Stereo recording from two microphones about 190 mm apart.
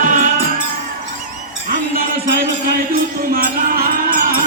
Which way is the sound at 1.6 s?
50° right (ahead or behind).